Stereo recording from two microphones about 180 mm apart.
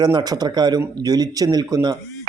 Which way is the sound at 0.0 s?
25° right (ahead or behind).